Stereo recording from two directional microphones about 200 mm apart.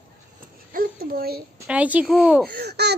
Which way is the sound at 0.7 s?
45° right (ahead or behind).